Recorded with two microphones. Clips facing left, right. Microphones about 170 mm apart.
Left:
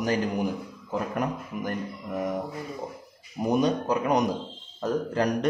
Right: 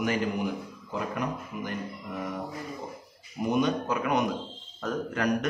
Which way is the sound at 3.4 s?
35° left (ahead or behind).